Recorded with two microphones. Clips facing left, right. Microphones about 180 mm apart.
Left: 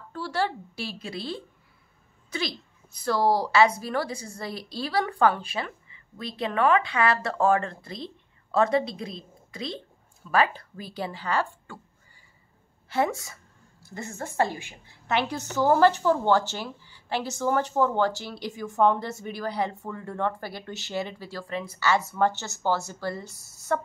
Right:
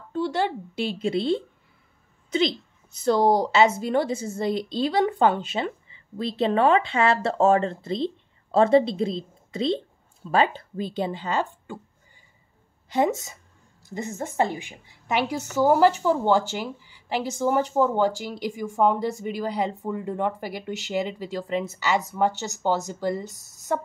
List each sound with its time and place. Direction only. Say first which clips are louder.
0.1 s speech: right 4 dB; 20° right (ahead or behind)
12.9 s a woman's voice: right 3 dB; 20° right (ahead or behind)